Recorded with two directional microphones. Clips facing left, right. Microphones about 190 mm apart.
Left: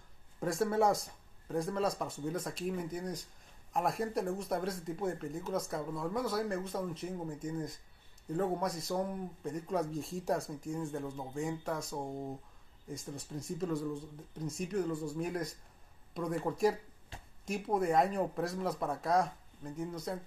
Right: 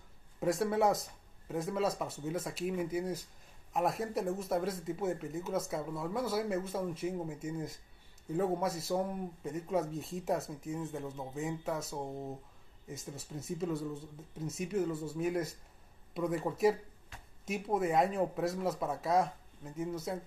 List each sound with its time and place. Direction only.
0.4 s speech: centre (ahead or behind)
17.1 s a sound: 30° left (ahead or behind)
17.5 s speech: centre (ahead or behind)